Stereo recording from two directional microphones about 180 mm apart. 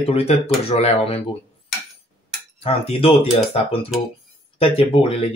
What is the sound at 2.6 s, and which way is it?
Speech, 30° left (ahead or behind).